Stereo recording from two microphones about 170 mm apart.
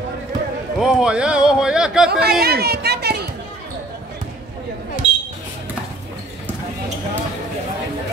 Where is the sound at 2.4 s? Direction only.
70° right (ahead or behind).